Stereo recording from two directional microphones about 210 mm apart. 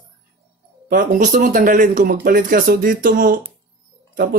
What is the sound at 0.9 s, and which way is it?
Speech, 40° right (ahead or behind).